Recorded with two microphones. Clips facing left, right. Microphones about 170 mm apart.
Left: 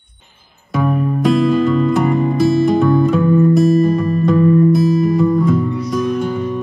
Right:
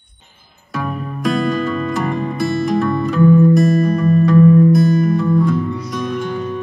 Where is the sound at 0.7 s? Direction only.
Centre (ahead or behind).